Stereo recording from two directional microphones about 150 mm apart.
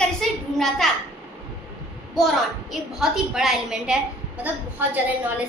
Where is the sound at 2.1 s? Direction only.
Centre (ahead or behind).